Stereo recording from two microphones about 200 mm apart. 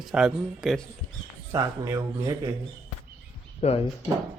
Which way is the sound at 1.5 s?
15° right (ahead or behind).